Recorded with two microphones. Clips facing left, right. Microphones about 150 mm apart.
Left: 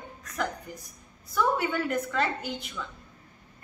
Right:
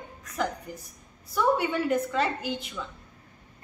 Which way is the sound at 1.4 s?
Centre (ahead or behind).